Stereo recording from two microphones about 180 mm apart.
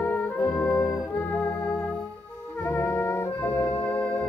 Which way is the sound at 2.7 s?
15° left (ahead or behind).